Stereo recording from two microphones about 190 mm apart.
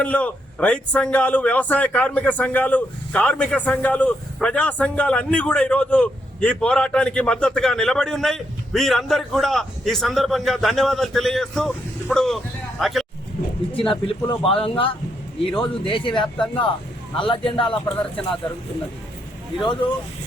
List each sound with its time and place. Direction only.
0.0 s a man's voice: 5° left (ahead or behind)
14.1 s speech: 30° left (ahead or behind)
15.9 s speech: 25° left (ahead or behind)
19.5 s a man's voice: 5° left (ahead or behind)